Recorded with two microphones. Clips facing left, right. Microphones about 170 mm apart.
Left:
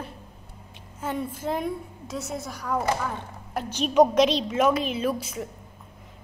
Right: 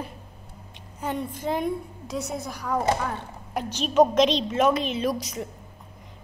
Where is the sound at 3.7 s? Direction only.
10° left (ahead or behind).